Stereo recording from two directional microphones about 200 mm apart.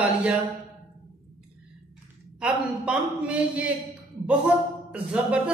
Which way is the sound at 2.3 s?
5° right (ahead or behind).